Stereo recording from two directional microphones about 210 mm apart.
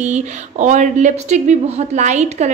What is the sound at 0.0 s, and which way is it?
Speech, 35° right (ahead or behind).